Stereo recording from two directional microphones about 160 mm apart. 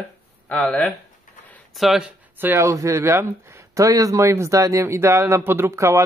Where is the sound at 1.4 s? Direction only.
5° left (ahead or behind).